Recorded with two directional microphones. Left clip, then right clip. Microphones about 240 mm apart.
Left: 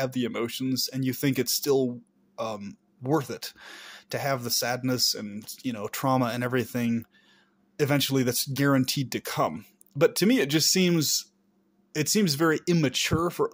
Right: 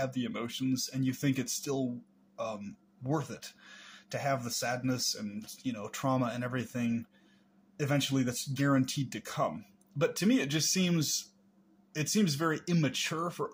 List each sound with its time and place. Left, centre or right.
0.0 s speech: left